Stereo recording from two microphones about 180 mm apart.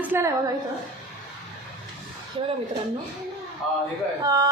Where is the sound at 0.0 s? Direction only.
15° right (ahead or behind).